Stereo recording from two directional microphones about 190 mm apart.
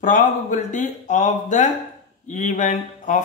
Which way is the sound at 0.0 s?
45° left (ahead or behind).